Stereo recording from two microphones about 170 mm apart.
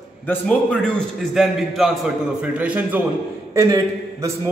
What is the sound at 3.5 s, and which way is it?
Speech, 20° right (ahead or behind).